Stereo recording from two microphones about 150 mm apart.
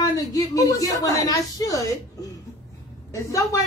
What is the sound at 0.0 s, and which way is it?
A man's voice, 25° left (ahead or behind).